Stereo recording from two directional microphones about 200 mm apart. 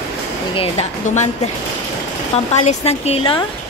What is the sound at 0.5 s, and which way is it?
Speech, 35° left (ahead or behind).